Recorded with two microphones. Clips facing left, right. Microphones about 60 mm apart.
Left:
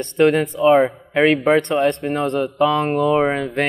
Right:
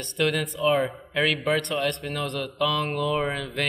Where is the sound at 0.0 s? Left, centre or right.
Left.